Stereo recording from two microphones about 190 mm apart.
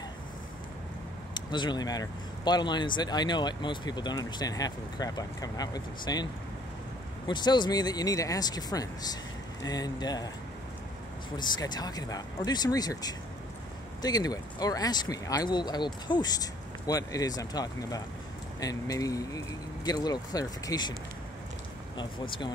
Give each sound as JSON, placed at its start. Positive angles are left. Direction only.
{"t": 1.3, "sound": "speech", "side_deg": 25}
{"t": 7.2, "sound": "speech", "side_deg": 25}
{"t": 11.3, "sound": "speech", "side_deg": 20}
{"t": 21.9, "sound": "speech", "side_deg": 25}